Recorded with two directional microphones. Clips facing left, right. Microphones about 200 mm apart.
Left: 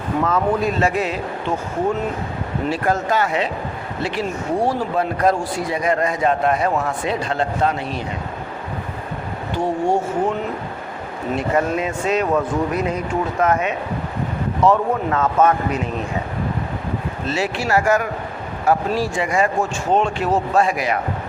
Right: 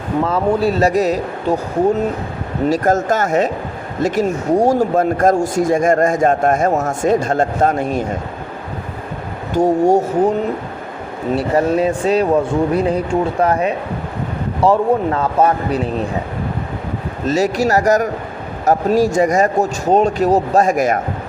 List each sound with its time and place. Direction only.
0.3 s speech: 30° right (ahead or behind)
2.6 s speech: 40° right (ahead or behind)
9.5 s speech: 40° right (ahead or behind)
11.3 s speech: 35° right (ahead or behind)
17.2 s speech: 40° right (ahead or behind)